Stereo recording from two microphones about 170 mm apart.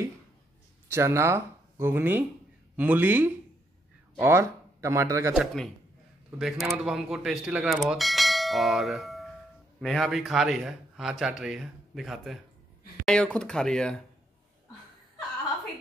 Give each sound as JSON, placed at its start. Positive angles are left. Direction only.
{"t": 0.8, "sound": "speech", "side_deg": -15}
{"t": 5.3, "sound": "a man's voice", "side_deg": 0}